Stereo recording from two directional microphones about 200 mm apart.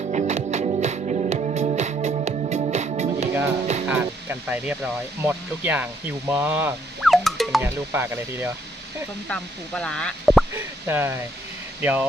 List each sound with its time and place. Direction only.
0.1 s music: 35° right (ahead or behind)
3.8 s speech: 10° right (ahead or behind)
7.0 s music: centre (ahead or behind)
7.6 s speech: 10° right (ahead or behind)
9.3 s speech: 5° left (ahead or behind)
10.5 s speech: 10° right (ahead or behind)